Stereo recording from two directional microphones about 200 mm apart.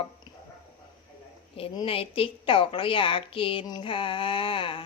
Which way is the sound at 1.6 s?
25° left (ahead or behind).